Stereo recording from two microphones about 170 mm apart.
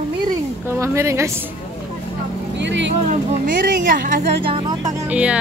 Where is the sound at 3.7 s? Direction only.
55° right (ahead or behind).